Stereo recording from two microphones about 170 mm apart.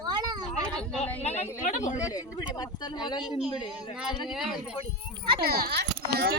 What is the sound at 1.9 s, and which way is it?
Speech, 20° left (ahead or behind).